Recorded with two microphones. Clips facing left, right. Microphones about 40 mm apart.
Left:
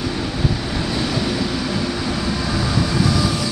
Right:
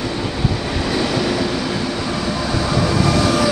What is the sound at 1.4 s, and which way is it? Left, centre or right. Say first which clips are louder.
Train: right 2 dB; centre.